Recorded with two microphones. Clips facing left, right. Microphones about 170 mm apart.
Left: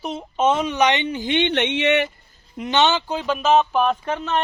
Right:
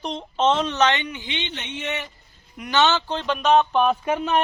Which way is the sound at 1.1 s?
40° left (ahead or behind).